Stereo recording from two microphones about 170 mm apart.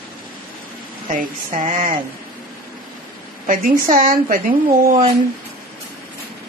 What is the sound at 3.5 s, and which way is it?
Speech, 50° right (ahead or behind).